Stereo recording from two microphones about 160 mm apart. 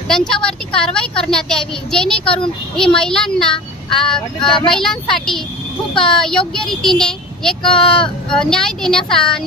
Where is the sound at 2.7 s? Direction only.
5° left (ahead or behind).